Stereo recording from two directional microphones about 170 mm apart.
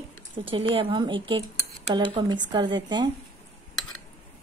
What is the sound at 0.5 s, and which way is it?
A woman's voice, 30° right (ahead or behind).